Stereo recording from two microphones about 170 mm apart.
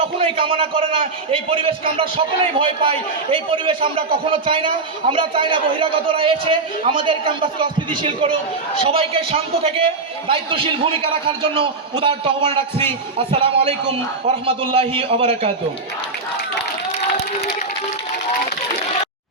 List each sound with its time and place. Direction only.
0.0 s a man's voice: 35° right (ahead or behind)